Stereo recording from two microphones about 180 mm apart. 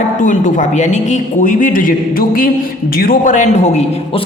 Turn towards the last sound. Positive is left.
turn(degrees=40)  # may be behind; listen again after turning